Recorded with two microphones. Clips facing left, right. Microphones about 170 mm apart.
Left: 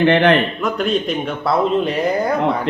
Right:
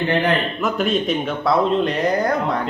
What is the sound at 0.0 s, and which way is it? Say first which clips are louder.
Speech: left 6 dB; 75° left (ahead or behind).